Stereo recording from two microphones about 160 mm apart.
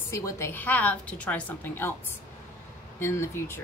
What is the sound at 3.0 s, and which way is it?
Speech, 15° left (ahead or behind).